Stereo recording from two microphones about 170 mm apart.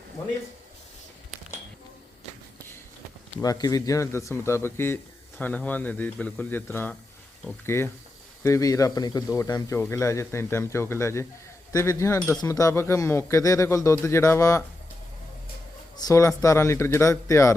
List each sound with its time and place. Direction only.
3.4 s a man's voice: 20° left (ahead or behind)
16.0 s speech: 20° left (ahead or behind)